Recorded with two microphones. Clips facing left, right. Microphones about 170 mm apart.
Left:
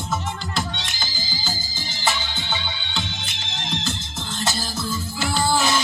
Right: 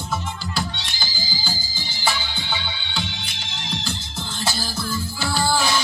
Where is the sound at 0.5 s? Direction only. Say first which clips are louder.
Even; 20° left (ahead or behind).